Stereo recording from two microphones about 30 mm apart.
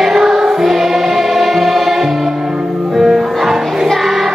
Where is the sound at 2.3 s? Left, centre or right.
Right.